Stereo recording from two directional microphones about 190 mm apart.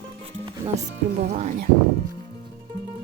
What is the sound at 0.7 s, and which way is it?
Speech, 40° right (ahead or behind).